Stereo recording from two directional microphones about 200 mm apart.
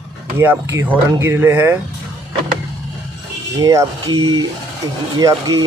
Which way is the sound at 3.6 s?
15° right (ahead or behind).